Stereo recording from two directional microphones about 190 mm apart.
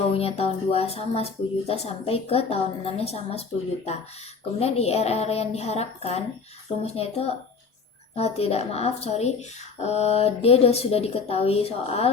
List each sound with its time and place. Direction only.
0.1 s speech: 30° left (ahead or behind)
4.6 s speech: 35° left (ahead or behind)